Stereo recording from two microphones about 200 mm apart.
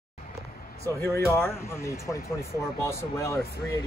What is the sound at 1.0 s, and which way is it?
Speech, 15° left (ahead or behind).